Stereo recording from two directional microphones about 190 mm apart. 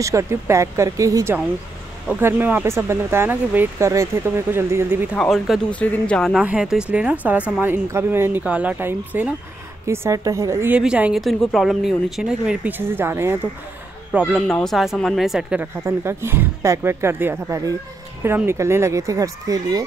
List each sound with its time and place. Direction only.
0.0 s speech: 15° right (ahead or behind)
5.1 s speech: centre (ahead or behind)
14.1 s speech: centre (ahead or behind); by 19.8 s 20° right (ahead or behind)